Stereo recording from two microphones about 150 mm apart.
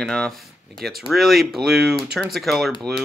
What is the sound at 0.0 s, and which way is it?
Speech, 5° left (ahead or behind).